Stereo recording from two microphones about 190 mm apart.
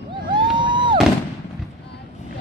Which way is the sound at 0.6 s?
25° right (ahead or behind).